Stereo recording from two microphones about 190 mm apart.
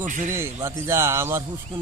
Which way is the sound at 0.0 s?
40° right (ahead or behind).